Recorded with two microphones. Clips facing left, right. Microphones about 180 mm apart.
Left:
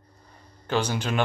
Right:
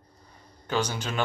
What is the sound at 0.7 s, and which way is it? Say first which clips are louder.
Speech: left 3 dB; 10° left (ahead or behind).